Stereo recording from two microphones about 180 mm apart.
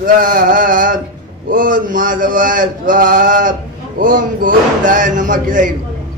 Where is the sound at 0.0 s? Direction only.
50° right (ahead or behind).